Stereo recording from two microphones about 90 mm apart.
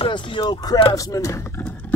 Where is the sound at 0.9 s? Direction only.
40° left (ahead or behind); by 2.0 s 20° left (ahead or behind).